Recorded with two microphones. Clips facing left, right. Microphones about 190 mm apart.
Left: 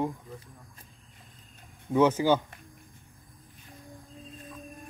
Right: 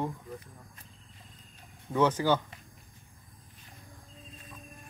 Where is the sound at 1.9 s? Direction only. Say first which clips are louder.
Left 3 dB; 10° left (ahead or behind).